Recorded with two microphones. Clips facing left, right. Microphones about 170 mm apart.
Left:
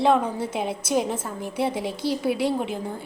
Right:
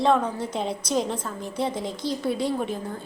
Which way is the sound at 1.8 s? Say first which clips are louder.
Left 2 dB; 65° left (ahead or behind).